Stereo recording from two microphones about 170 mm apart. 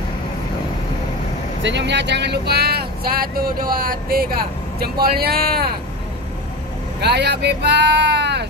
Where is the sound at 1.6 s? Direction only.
90° right; by 5.7 s 65° right (ahead or behind).